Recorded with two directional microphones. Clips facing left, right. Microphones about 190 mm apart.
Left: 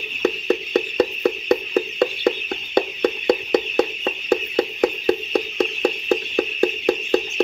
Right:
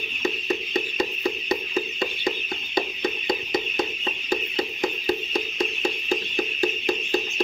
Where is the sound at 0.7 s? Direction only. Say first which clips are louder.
Left 7 dB; 65° left (ahead or behind).